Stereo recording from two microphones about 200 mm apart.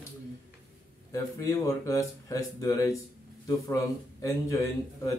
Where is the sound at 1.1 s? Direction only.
15° left (ahead or behind).